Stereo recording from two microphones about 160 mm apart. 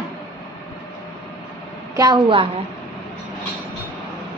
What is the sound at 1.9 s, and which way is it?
Speech, 25° right (ahead or behind).